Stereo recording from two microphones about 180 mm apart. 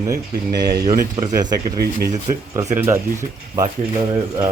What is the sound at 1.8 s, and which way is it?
Speech, 55° right (ahead or behind).